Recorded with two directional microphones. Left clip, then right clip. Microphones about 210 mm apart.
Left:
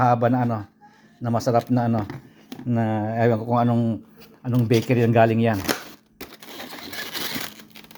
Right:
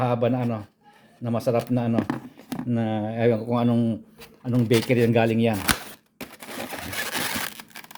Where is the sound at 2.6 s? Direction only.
Centre (ahead or behind).